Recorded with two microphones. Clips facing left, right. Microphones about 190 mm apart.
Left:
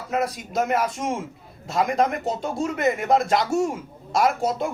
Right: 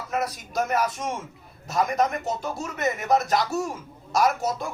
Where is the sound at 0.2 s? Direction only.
25° left (ahead or behind).